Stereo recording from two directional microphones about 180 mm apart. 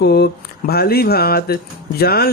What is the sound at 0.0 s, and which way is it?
Speech, 60° left (ahead or behind).